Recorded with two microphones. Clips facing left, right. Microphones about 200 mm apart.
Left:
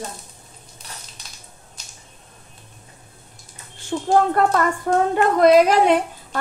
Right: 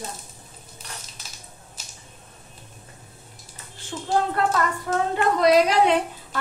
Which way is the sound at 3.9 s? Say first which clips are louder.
Left 8 dB; 50° left (ahead or behind).